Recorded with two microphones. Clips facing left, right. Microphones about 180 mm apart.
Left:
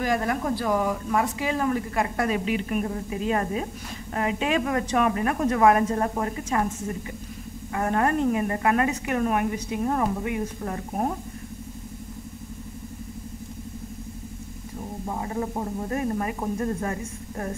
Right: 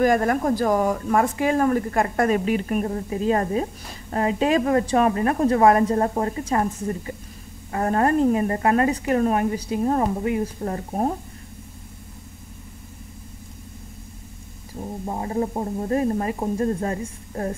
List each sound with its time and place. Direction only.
0.0 s a woman's voice: 50° right (ahead or behind); by 11.1 s 30° right (ahead or behind)
15.0 s speech: 30° right (ahead or behind)